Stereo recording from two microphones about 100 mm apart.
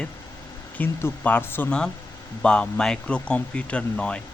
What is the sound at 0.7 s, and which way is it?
Speech, 20° left (ahead or behind).